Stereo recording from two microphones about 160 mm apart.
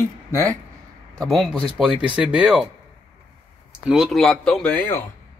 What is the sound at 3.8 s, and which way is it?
Speech, centre (ahead or behind).